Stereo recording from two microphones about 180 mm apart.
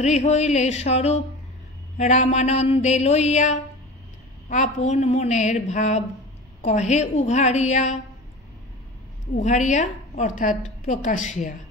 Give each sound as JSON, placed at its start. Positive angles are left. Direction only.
{"t": 0.0, "sound": "a woman's voice", "side_deg": 40}
{"t": 9.3, "sound": "a woman's voice", "side_deg": 40}